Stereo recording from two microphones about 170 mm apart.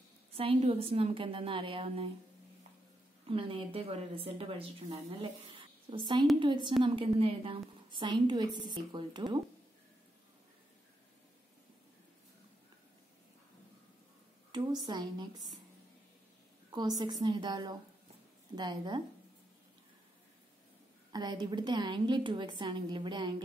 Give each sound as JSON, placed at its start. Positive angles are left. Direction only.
{"t": 0.3, "sound": "a woman's voice", "side_deg": -35}
{"t": 3.3, "sound": "a woman's voice", "side_deg": -30}
{"t": 14.5, "sound": "a woman's voice", "side_deg": -25}
{"t": 16.7, "sound": "a woman's voice", "side_deg": -25}
{"t": 21.1, "sound": "a woman's voice", "side_deg": -25}